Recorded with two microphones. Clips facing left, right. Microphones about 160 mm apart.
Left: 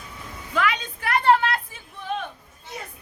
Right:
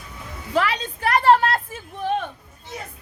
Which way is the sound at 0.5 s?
30° right (ahead or behind).